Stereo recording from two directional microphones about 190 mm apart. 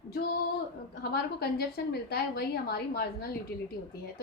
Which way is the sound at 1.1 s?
55° left (ahead or behind).